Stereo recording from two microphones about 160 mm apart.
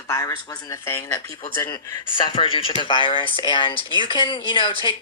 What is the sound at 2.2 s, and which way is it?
Speech, 35° left (ahead or behind).